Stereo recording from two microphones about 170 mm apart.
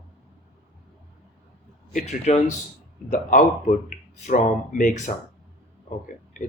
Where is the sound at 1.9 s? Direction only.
40° left (ahead or behind).